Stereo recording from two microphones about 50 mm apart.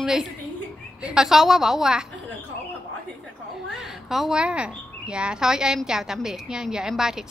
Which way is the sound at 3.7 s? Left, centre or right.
Centre.